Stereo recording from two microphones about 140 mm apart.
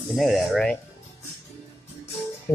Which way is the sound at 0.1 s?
Centre (ahead or behind).